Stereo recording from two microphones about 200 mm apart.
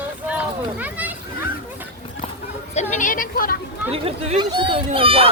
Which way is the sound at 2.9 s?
40° left (ahead or behind).